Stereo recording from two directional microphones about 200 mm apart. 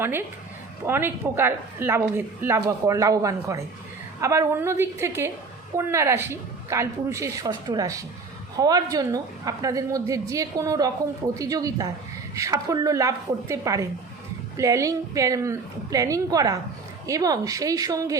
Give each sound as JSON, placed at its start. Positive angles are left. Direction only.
{"t": 0.0, "sound": "a woman's voice", "side_deg": -10}